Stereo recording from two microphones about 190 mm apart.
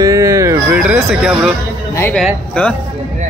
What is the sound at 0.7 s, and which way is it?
Speech, 5° right (ahead or behind).